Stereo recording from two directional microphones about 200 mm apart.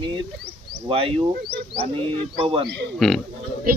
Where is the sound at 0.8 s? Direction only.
25° right (ahead or behind).